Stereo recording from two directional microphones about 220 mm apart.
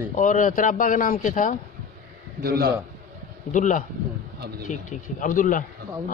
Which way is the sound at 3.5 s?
35° left (ahead or behind).